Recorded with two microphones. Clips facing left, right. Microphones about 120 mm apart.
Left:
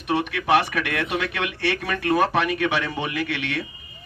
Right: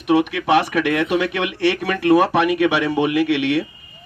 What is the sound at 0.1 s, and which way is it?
Speech, 90° right.